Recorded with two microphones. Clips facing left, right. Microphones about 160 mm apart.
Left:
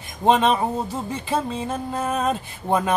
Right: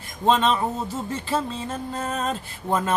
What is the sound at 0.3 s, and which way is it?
Music, 15° left (ahead or behind).